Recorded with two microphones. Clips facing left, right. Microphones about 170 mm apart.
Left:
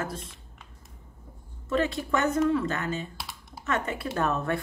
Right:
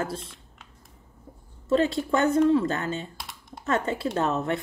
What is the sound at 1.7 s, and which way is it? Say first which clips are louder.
A woman's voice: right 4 dB; 30° right (ahead or behind).